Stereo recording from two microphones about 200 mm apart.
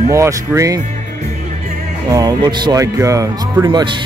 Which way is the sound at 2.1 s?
20° right (ahead or behind).